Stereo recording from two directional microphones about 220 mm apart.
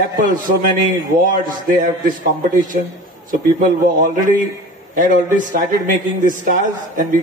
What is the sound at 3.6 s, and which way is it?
A man's voice, 35° right (ahead or behind).